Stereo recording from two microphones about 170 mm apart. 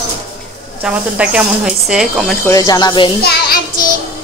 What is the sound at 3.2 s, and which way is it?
Child singing, 75° left (ahead or behind).